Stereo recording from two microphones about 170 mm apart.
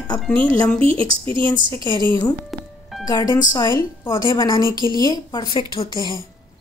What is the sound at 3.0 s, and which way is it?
A woman's voice, 25° left (ahead or behind).